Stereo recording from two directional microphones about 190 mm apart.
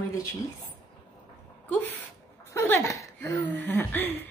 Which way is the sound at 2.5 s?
15° left (ahead or behind).